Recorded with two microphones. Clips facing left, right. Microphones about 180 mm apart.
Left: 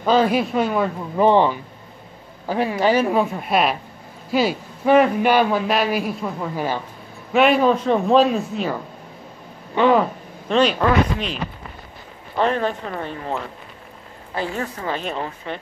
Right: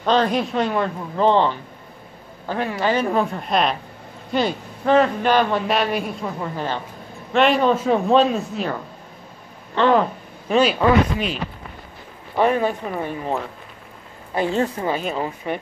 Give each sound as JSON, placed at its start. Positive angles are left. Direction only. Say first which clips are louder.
{"t": 0.0, "sound": "a man's voice", "louder": "left 2 dB", "side_deg": 5}
{"t": 10.5, "sound": "speech", "louder": "right 1 dB", "side_deg": -5}
{"t": 12.4, "sound": "speech", "louder": "right 2 dB", "side_deg": -10}
{"t": 14.9, "sound": "speech", "louder": "right 2 dB", "side_deg": -5}